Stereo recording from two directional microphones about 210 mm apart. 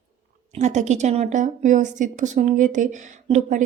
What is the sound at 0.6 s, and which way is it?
A woman's voice, 35° right (ahead or behind).